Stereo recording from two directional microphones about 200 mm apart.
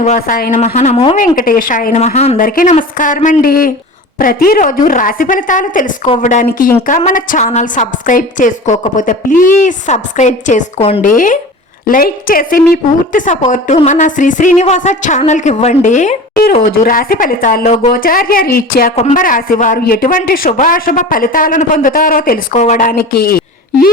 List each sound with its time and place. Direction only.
0.2 s speech: 50° left (ahead or behind)
0.6 s a woman's voice: 35° left (ahead or behind)
1.2 s a woman's voice: 45° left (ahead or behind)